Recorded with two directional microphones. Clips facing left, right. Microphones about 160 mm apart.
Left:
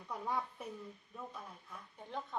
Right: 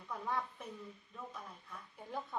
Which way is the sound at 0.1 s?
10° left (ahead or behind).